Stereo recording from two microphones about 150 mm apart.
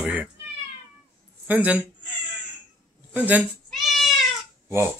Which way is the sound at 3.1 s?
10° right (ahead or behind).